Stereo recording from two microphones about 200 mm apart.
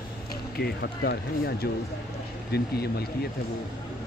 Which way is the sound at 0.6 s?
55° left (ahead or behind).